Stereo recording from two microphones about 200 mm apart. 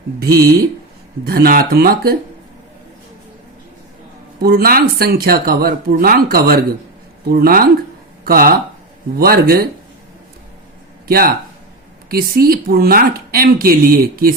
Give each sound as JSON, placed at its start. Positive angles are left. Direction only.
{"t": 0.3, "sound": "speech", "side_deg": -15}
{"t": 1.2, "sound": "speech", "side_deg": -50}
{"t": 4.4, "sound": "speech", "side_deg": -50}
{"t": 12.1, "sound": "speech", "side_deg": -50}